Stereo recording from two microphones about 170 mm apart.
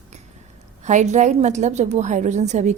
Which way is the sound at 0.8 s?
45° right (ahead or behind).